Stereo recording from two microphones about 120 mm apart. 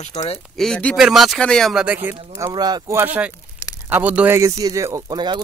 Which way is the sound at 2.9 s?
15° right (ahead or behind).